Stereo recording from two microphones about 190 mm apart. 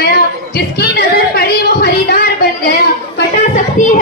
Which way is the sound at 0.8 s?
55° left (ahead or behind).